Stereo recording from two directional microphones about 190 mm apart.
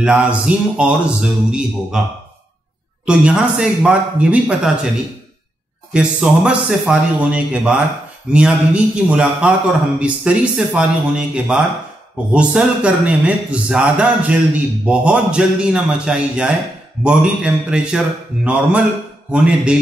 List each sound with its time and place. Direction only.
0.0 s a man's voice: 5° right (ahead or behind)
3.1 s a man's voice: 5° right (ahead or behind)
5.9 s a man's voice: 5° right (ahead or behind)